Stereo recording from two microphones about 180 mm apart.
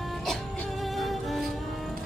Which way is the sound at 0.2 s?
Centre (ahead or behind).